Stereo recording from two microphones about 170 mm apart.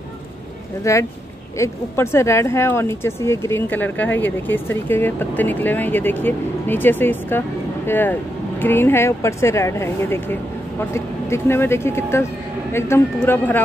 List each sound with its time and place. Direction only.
0.9 s speech: 20° left (ahead or behind)